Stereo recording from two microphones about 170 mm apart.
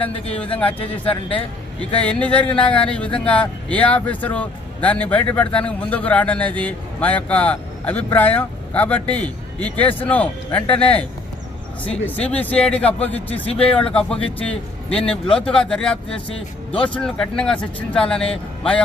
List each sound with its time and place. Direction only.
0.0 s speech: 35° left (ahead or behind)
0.3 s speech: 10° left (ahead or behind)
0.8 s speech: 30° left (ahead or behind)
2.0 s speech: 10° left (ahead or behind)